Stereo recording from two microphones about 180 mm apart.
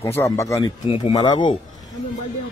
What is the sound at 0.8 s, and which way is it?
Speech, 30° left (ahead or behind).